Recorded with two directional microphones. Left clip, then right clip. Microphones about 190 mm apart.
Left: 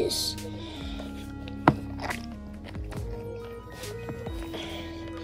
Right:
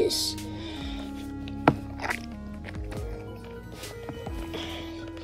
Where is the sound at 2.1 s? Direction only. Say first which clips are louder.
Right 4 dB; centre (ahead or behind).